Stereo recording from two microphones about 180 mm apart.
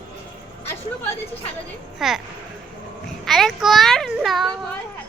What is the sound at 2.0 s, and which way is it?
Speech, centre (ahead or behind).